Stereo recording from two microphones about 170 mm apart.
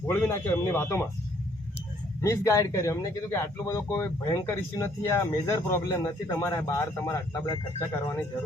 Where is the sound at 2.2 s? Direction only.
20° left (ahead or behind).